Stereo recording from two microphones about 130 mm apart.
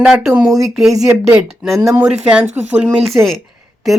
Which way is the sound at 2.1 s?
5° right (ahead or behind).